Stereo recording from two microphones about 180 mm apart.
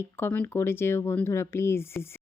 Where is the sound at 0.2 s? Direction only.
10° left (ahead or behind).